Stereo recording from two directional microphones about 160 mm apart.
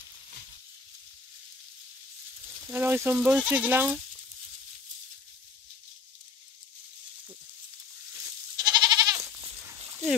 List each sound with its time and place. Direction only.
2.7 s speech: 15° right (ahead or behind)
8.5 s goat: 25° right (ahead or behind)